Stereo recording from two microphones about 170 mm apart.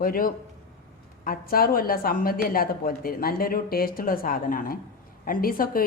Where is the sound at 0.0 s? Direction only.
55° left (ahead or behind).